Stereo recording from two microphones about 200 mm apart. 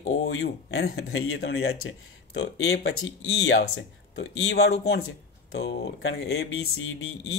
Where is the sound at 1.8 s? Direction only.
80° left.